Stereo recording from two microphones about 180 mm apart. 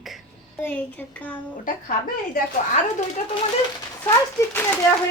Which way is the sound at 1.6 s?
50° left (ahead or behind).